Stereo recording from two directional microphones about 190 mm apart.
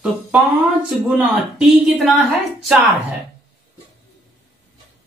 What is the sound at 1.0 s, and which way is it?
Speech, 5° right (ahead or behind).